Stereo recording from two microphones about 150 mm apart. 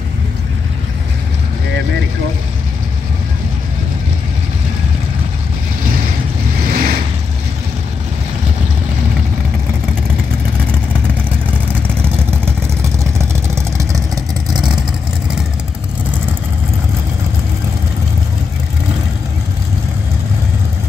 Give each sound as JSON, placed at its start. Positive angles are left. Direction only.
{"t": 6.7, "sound": "vehicle", "side_deg": -75}
{"t": 13.2, "sound": "vehicle", "side_deg": -20}